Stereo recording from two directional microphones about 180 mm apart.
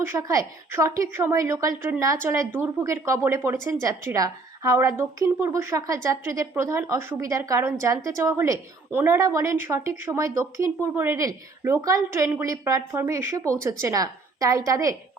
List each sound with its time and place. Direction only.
0.0 s speech: 15° right (ahead or behind)